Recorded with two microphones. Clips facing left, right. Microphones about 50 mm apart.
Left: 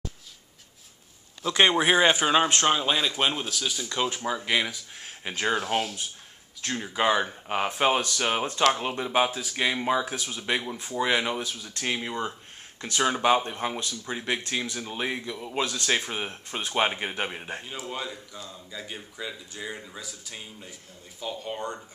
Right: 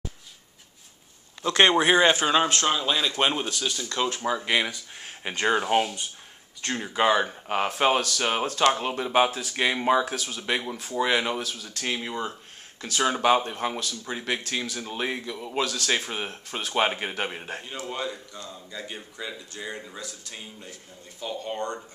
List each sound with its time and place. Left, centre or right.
1.6 s speech: centre
3.0 s a man's voice: centre
3.3 s a man's voice: centre
4.4 s a man's voice: centre
10.0 s a man's voice: centre